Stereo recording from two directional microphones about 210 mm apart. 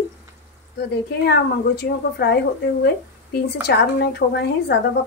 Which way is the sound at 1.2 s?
50° left (ahead or behind).